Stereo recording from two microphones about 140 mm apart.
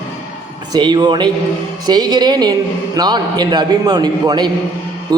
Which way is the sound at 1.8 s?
30° right (ahead or behind).